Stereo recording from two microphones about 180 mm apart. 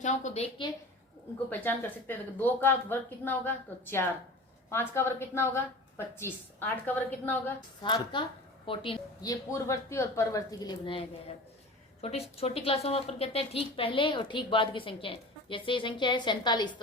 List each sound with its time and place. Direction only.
0.0 s a woman's voice: 40° left (ahead or behind)
1.5 s speech: 10° left (ahead or behind)
7.8 s a woman's voice: 25° left (ahead or behind)
12.0 s a woman's voice: 35° left (ahead or behind)